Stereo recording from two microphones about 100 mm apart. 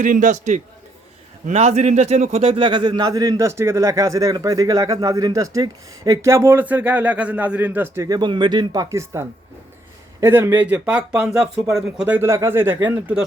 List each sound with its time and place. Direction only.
1.5 s a man's voice: 90° right; by 8.0 s 20° right (ahead or behind)
8.0 s a man's voice: 45° right (ahead or behind); by 12.0 s 5° right (ahead or behind)
12.0 s speech: 20° right (ahead or behind)